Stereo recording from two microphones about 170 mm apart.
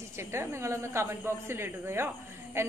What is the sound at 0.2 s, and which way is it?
A woman's voice, 15° right (ahead or behind).